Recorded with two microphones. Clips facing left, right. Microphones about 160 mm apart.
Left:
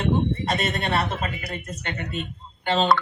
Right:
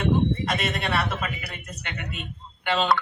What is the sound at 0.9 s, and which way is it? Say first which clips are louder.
Speech: left 2 dB; 45° left (ahead or behind).